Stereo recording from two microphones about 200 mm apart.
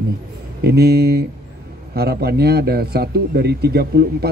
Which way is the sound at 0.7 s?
55° right (ahead or behind).